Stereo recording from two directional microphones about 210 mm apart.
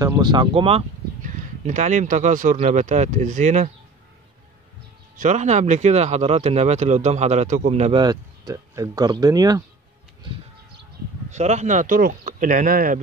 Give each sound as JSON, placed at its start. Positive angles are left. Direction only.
{"t": 0.0, "sound": "speech", "side_deg": -20}
{"t": 5.1, "sound": "speech", "side_deg": -35}
{"t": 11.3, "sound": "speech", "side_deg": -35}